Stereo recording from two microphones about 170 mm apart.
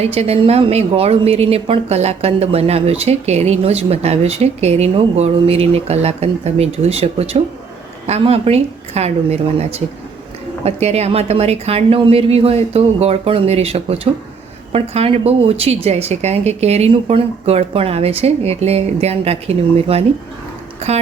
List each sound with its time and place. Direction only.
0.0 s a woman's voice: 35° right (ahead or behind)